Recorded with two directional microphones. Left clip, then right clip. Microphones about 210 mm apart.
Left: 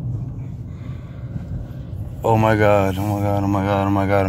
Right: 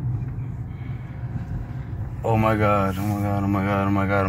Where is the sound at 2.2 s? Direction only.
40° left (ahead or behind).